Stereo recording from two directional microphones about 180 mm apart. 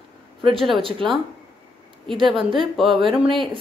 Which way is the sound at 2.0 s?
25° right (ahead or behind).